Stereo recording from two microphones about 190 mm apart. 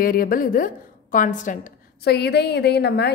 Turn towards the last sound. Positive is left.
turn(degrees=60)  # may be behind; listen again after turning